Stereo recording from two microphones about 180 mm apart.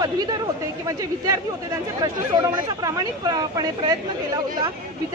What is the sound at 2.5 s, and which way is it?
Speech, 20° right (ahead or behind).